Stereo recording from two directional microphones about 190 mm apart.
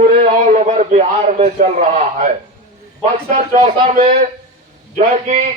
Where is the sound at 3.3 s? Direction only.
35° right (ahead or behind).